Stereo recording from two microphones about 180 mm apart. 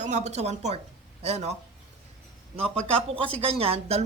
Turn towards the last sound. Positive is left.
turn(degrees=-35)  # may be behind; listen again after turning